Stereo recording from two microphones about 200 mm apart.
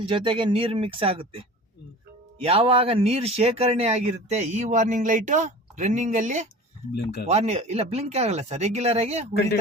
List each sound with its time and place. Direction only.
0.0 s speech: 25° right (ahead or behind)
2.4 s speech: 30° right (ahead or behind)